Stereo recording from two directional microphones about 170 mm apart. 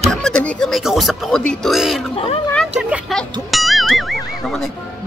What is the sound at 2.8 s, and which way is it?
Speech, 5° right (ahead or behind).